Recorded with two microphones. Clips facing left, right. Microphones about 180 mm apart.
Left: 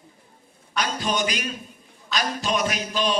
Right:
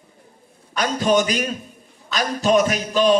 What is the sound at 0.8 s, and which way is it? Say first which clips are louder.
A man's voice: right 7 dB; 45° right (ahead or behind).